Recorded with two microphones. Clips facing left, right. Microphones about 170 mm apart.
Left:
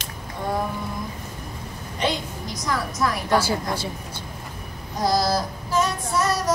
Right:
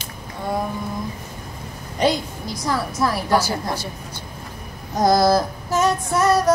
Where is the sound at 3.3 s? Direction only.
25° left (ahead or behind).